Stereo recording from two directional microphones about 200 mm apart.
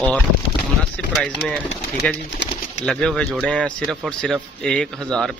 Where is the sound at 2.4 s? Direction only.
60° left (ahead or behind).